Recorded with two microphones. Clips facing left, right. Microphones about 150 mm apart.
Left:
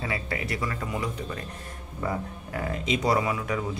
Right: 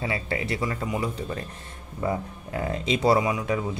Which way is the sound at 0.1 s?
25° right (ahead or behind).